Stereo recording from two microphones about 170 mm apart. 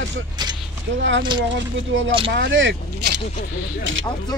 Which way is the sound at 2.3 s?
90° right.